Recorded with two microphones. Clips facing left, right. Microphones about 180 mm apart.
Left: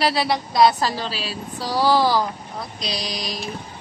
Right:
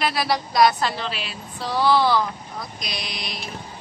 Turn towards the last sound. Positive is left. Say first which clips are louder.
# left 5 dB
turn(degrees=40)  # may be behind; listen again after turning